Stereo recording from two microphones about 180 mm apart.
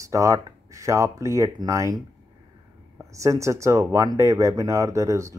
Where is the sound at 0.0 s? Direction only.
15° right (ahead or behind).